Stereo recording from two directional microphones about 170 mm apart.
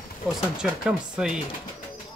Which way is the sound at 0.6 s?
5° right (ahead or behind).